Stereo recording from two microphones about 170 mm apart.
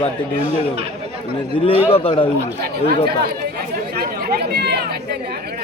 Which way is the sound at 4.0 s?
70° right (ahead or behind).